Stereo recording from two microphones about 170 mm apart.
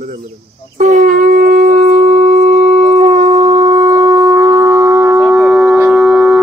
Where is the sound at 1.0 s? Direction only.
55° right (ahead or behind).